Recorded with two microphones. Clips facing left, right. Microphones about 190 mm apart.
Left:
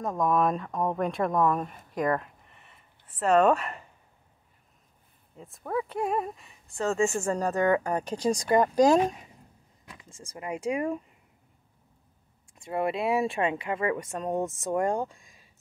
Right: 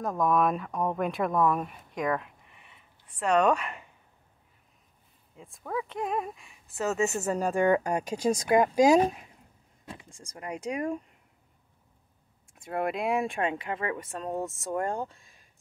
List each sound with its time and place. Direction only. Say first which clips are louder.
0.0 s speech: even; centre (ahead or behind)
5.4 s speech: left 3 dB; centre (ahead or behind)
7.0 s speech: left 3 dB; 20° right (ahead or behind)
7.2 s speech: right 3 dB; 10° right (ahead or behind); by 10.9 s 10° left (ahead or behind)
12.4 s speech: left 2 dB; centre (ahead or behind)
13.9 s speech: left 3 dB; 15° left (ahead or behind)